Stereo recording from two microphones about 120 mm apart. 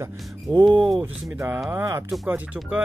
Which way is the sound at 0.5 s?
40° right (ahead or behind).